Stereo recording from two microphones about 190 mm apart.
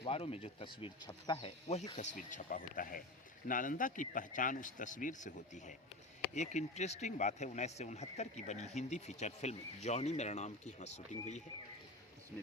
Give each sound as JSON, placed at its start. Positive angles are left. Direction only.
{"t": 0.0, "sound": "speech", "side_deg": 30}
{"t": 2.1, "sound": "a man's voice", "side_deg": 45}